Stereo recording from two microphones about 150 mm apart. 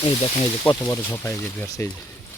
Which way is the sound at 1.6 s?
25° left (ahead or behind).